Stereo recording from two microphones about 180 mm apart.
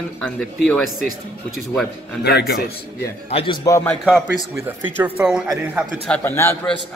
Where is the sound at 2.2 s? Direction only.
60° left (ahead or behind).